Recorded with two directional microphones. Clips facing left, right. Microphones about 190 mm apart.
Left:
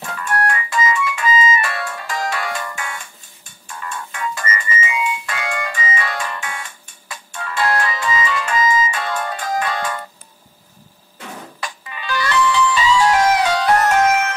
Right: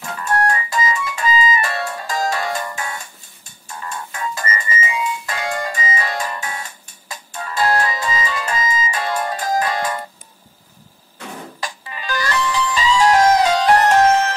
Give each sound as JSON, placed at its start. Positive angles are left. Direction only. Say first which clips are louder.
{"t": 0.3, "sound": "music", "louder": "right 2 dB", "side_deg": -25}
{"t": 0.7, "sound": "music", "louder": "left 2 dB", "side_deg": -35}
{"t": 3.7, "sound": "music", "louder": "even", "side_deg": -25}
{"t": 4.1, "sound": "music", "louder": "even", "side_deg": -35}
{"t": 11.6, "sound": "music", "louder": "even", "side_deg": -35}